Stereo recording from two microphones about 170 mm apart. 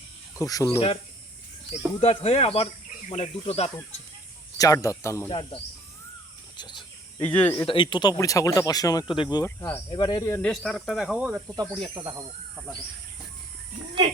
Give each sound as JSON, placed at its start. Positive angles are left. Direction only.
{"t": 0.3, "sound": "speech", "side_deg": 20}
{"t": 2.0, "sound": "speech", "side_deg": 35}
{"t": 4.5, "sound": "speech", "side_deg": 20}
{"t": 5.3, "sound": "speech", "side_deg": 30}
{"t": 6.6, "sound": "cricket", "side_deg": 25}
{"t": 7.2, "sound": "cricket", "side_deg": 10}
{"t": 7.5, "sound": "speech", "side_deg": 25}
{"t": 9.4, "sound": "cricket", "side_deg": 15}
{"t": 9.9, "sound": "speech", "side_deg": 25}
{"t": 10.4, "sound": "speech", "side_deg": 5}
{"t": 11.9, "sound": "speech", "side_deg": -20}